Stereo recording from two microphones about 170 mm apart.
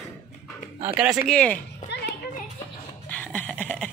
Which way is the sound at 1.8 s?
80° left.